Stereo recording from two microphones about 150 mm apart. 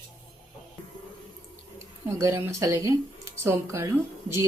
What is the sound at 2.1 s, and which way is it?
A woman's voice, 20° right (ahead or behind).